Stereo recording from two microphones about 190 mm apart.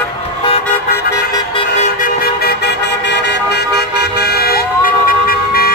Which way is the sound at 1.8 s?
50° left (ahead or behind).